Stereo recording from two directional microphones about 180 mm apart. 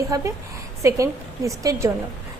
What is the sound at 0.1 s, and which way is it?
A woman's voice, 20° right (ahead or behind).